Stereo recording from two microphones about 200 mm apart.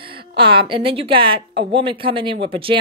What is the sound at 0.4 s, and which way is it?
A woman's voice, 25° right (ahead or behind).